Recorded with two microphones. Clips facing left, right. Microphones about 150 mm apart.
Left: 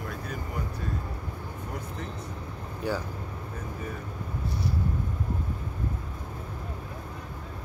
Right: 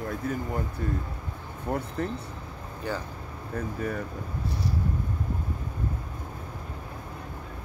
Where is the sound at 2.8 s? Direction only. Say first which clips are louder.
Left 2 dB; 10° left (ahead or behind).